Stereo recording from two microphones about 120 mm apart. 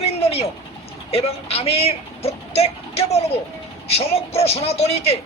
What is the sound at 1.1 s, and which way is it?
Speech, 55° left (ahead or behind).